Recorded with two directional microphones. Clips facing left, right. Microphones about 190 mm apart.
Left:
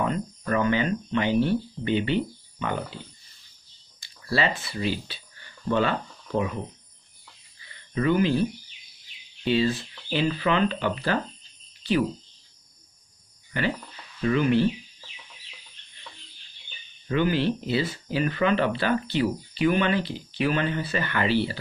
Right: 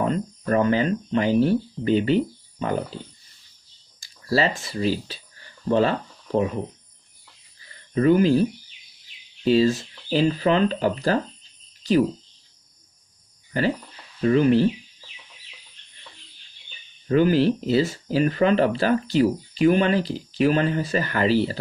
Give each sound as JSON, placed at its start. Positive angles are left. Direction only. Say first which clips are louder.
{"t": 0.0, "sound": "speech", "louder": "right 3 dB", "side_deg": -40}
{"t": 4.3, "sound": "speech", "louder": "right 4 dB", "side_deg": -40}
{"t": 7.6, "sound": "a sound", "louder": "right 6 dB", "side_deg": -40}
{"t": 9.4, "sound": "speech", "louder": "right 5 dB", "side_deg": -40}
{"t": 13.5, "sound": "speech", "louder": "right 4 dB", "side_deg": -35}
{"t": 17.1, "sound": "speech", "louder": "right 6 dB", "side_deg": -40}